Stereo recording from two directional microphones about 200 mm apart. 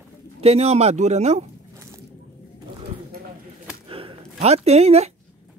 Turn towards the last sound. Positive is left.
turn(degrees=-30)  # may be behind; listen again after turning